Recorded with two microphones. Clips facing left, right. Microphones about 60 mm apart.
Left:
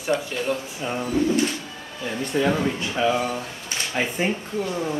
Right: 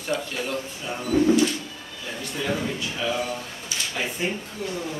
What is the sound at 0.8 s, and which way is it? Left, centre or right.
Speech, left.